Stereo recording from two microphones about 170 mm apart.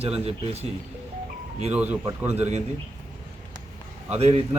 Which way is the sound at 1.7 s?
10° right (ahead or behind).